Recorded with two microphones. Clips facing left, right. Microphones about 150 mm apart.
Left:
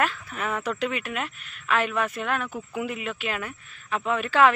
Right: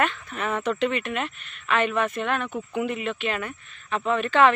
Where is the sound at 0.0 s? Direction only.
Centre (ahead or behind).